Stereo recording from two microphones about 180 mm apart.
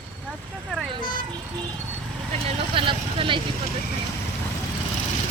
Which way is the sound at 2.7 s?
30° right (ahead or behind).